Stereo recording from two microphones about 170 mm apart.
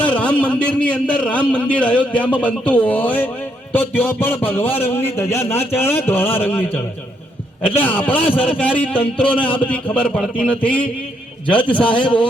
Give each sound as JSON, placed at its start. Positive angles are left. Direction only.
{"t": 0.0, "sound": "a man's voice", "side_deg": 5}
{"t": 11.9, "sound": "a man's voice", "side_deg": 30}